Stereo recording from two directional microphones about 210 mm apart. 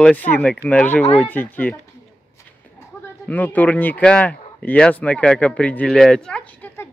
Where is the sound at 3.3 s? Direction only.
10° left (ahead or behind).